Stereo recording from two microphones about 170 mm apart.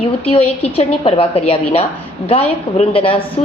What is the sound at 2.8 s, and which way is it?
Speech, 35° left (ahead or behind).